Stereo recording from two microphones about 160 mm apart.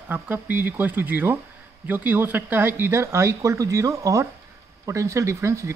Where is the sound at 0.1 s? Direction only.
10° right (ahead or behind).